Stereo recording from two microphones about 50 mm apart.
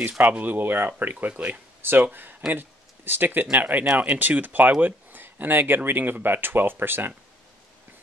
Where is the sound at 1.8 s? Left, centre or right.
Right.